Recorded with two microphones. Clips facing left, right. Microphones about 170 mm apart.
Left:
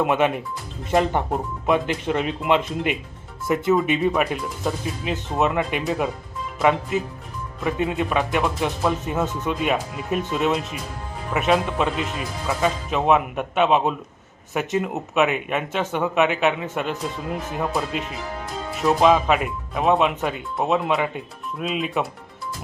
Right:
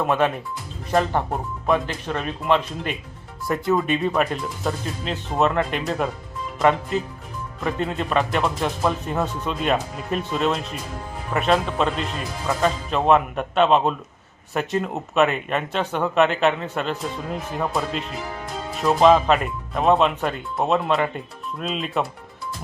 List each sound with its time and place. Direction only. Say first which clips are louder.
0.0 s speech: left 1 dB; 15° left (ahead or behind)
3.4 s speech: left 2 dB; centre (ahead or behind)
7.6 s speech: left 2 dB; 5° left (ahead or behind)
9.2 s speech: left 2 dB; 20° left (ahead or behind)
9.6 s speech: right 3 dB; 5° left (ahead or behind)
17.6 s speech: even; 5° left (ahead or behind)